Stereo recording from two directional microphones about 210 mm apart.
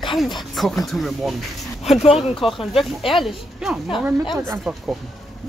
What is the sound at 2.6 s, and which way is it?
Speech, 25° left (ahead or behind).